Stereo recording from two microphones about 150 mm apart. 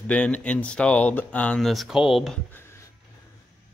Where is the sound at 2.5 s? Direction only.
15° left (ahead or behind).